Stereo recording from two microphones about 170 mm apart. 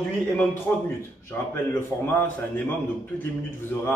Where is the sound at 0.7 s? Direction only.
15° left (ahead or behind).